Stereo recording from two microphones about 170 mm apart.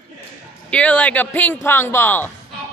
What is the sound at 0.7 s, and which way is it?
A man's voice, 5° left (ahead or behind).